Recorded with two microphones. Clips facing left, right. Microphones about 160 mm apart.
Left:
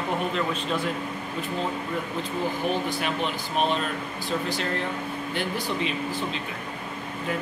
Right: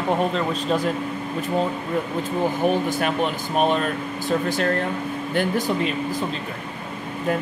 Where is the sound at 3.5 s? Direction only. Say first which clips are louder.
Right 5 dB; 50° right (ahead or behind).